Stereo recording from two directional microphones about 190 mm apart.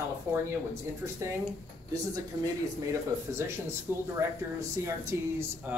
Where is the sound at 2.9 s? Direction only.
15° right (ahead or behind).